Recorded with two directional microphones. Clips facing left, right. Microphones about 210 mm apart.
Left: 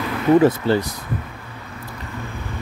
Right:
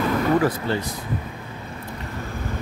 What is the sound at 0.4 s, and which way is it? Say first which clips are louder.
Speech: left 6 dB; 25° left (ahead or behind).